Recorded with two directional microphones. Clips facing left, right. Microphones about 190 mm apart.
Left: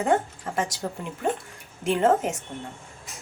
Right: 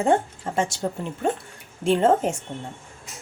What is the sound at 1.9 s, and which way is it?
Speech, 30° right (ahead or behind).